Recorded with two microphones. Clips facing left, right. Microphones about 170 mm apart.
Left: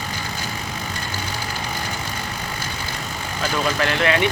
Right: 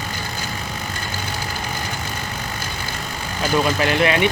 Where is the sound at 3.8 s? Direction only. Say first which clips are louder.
Right 2 dB; 15° right (ahead or behind).